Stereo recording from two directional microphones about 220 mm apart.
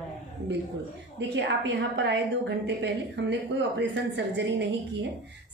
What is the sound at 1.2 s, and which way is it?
A woman's voice, 55° right (ahead or behind).